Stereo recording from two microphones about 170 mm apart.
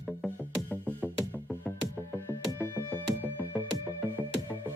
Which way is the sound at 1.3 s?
10° left (ahead or behind).